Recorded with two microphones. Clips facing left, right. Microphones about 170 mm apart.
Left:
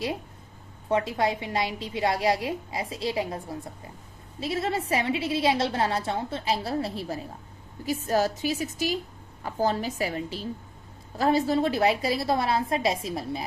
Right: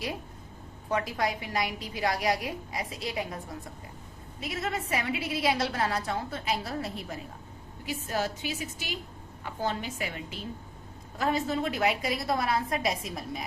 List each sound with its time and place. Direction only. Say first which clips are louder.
0.9 s a woman's voice: left 4 dB; 25° left (ahead or behind)